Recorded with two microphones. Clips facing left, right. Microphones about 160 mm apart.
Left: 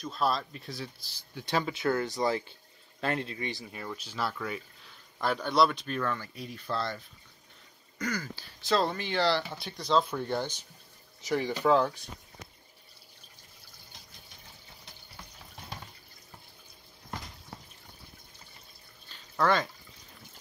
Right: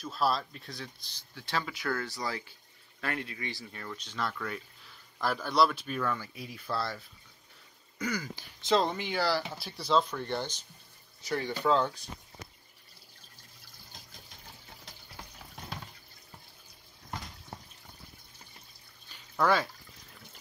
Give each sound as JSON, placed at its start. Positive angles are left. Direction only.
{"t": 0.0, "sound": "speech", "side_deg": 0}
{"t": 1.3, "sound": "speech", "side_deg": 15}
{"t": 8.0, "sound": "speech", "side_deg": -10}
{"t": 10.0, "sound": "speech", "side_deg": 10}
{"t": 19.1, "sound": "a sound", "side_deg": -5}